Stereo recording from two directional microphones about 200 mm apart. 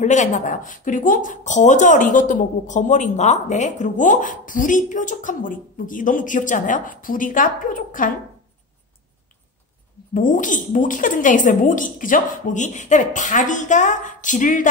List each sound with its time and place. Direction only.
0.0 s speech: 35° left (ahead or behind)
10.1 s speech: 40° left (ahead or behind)